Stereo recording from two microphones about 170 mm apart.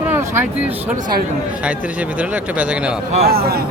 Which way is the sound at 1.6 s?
10° right (ahead or behind).